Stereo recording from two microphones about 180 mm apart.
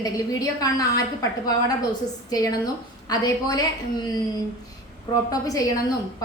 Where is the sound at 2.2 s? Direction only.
20° left (ahead or behind).